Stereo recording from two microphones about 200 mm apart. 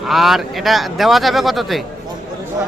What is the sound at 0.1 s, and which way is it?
Speech, centre (ahead or behind).